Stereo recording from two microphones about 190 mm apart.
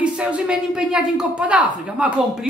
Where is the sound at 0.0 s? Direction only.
5° right (ahead or behind).